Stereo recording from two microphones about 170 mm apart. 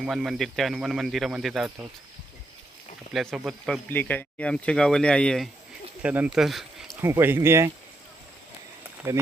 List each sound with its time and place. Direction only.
0.0 s speech: 5° right (ahead or behind)
3.1 s speech: centre (ahead or behind)
3.8 s speech: 10° left (ahead or behind)
6.0 s speech: 5° right (ahead or behind)
7.0 s speech: 15° right (ahead or behind)
9.1 s speech: 15° right (ahead or behind)